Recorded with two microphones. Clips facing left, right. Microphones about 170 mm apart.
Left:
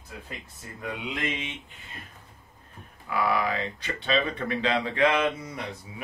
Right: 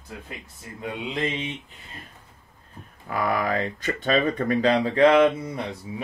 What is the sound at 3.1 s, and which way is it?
Speech, 45° right (ahead or behind).